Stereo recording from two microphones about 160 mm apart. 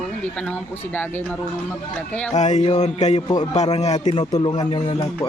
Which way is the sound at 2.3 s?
45° left (ahead or behind).